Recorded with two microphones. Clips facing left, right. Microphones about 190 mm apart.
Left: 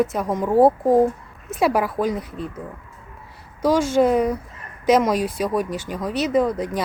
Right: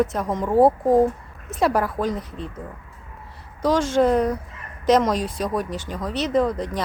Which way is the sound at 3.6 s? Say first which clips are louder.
Left 1 dB; 10° left (ahead or behind).